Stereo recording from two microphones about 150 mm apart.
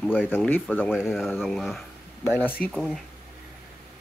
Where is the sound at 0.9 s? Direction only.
Centre (ahead or behind).